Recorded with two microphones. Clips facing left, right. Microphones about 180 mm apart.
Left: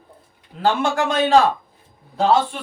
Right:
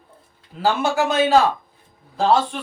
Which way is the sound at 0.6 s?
5° right (ahead or behind).